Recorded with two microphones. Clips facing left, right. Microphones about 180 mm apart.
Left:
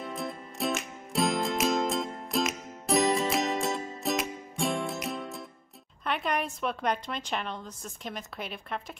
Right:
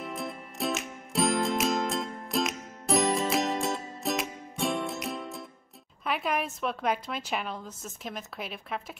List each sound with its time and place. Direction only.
0.0 s music: centre (ahead or behind)
6.0 s a woman's voice: 5° right (ahead or behind)